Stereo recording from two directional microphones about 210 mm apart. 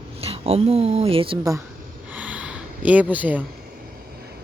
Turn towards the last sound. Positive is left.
turn(degrees=-5)  # may be behind; listen again after turning